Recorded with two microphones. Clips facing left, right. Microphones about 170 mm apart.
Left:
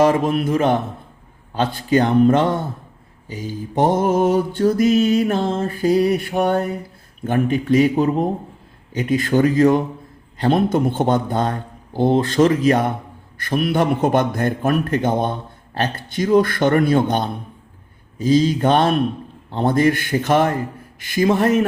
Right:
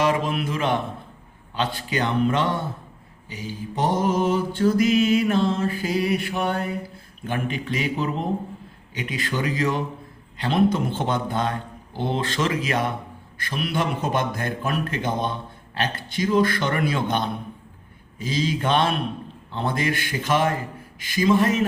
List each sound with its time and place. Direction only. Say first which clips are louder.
0.0 s a man's voice: left 6 dB; 45° left (ahead or behind)